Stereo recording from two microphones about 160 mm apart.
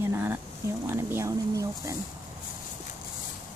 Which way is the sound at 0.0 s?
15° right (ahead or behind).